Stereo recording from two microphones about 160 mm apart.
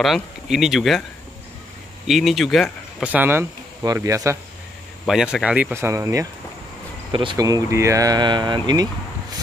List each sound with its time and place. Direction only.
0.0 s speech: centre (ahead or behind)
2.0 s speech: centre (ahead or behind); by 4.4 s 20° right (ahead or behind)
5.0 s speech: 5° right (ahead or behind); by 6.2 s 20° right (ahead or behind)
7.1 s speech: 30° right (ahead or behind)